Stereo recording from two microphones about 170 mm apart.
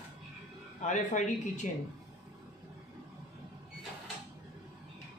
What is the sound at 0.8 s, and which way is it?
Speech, 45° left (ahead or behind).